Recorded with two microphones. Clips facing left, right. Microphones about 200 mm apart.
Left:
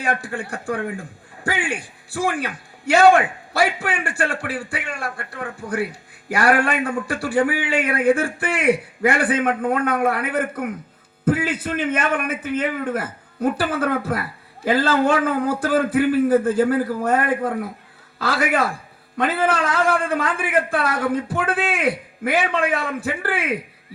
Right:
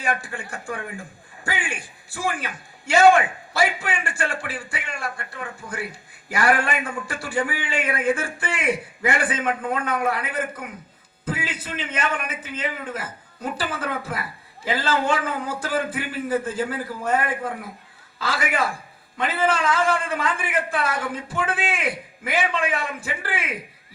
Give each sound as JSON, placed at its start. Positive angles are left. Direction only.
{"t": 0.0, "sound": "a man's voice", "side_deg": 60}
{"t": 2.1, "sound": "a man's voice", "side_deg": 60}